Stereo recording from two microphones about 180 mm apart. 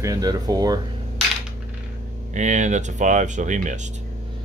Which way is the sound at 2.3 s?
40° right (ahead or behind).